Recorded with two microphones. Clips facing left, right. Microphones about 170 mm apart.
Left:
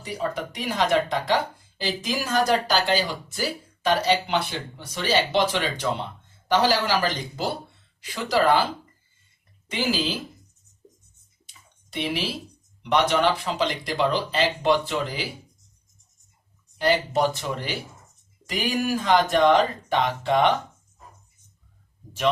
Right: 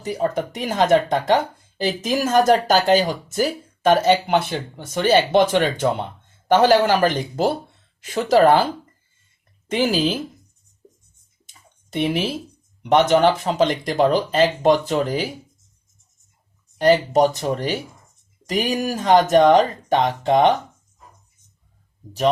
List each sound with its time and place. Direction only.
0.2 s speech: 45° right (ahead or behind)
9.6 s speech: 50° right (ahead or behind)
11.4 s a sound: 45° right (ahead or behind)
12.8 s speech: 45° right (ahead or behind)
16.7 s speech: 40° right (ahead or behind)